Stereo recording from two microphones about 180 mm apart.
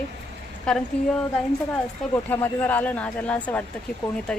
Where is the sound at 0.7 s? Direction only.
5° left (ahead or behind).